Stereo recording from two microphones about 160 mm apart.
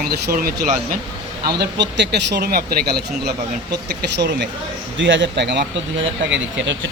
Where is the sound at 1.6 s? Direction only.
90° right.